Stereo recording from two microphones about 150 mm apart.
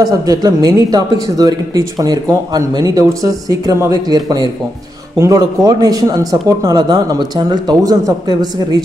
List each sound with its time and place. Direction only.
0.0 s speech: 25° right (ahead or behind)